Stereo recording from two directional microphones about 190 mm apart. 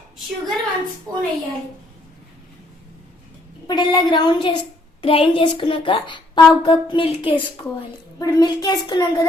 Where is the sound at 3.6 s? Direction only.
25° left (ahead or behind).